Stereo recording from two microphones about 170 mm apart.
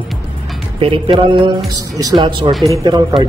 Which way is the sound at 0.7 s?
30° right (ahead or behind).